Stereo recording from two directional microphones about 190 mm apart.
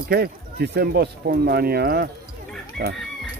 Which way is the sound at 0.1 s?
55° right (ahead or behind).